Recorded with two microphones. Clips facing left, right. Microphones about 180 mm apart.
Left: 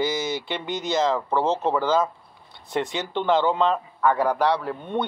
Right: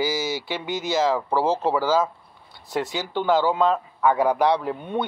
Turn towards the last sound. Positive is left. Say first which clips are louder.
# right 1 dB
turn(degrees=-10)  # may be behind; listen again after turning